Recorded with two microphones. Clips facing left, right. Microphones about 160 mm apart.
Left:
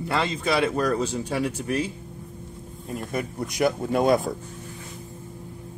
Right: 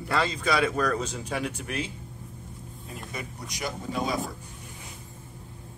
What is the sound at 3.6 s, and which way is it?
Speech, 60° left (ahead or behind).